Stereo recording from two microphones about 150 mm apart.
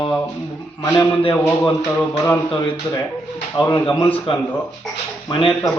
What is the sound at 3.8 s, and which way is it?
Speech, 35° left (ahead or behind).